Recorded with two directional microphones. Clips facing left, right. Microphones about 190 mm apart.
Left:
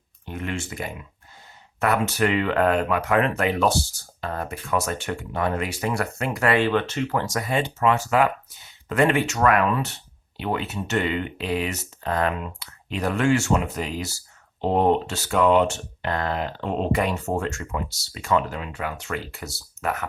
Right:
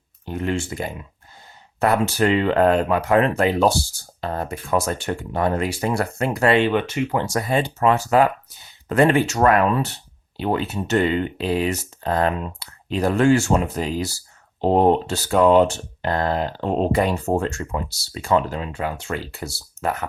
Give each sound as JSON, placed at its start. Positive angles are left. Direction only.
{"t": 0.3, "sound": "speech", "side_deg": -35}
{"t": 7.3, "sound": "speech", "side_deg": -35}